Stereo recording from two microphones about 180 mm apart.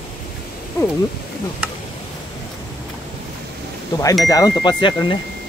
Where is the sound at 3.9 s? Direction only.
25° left (ahead or behind).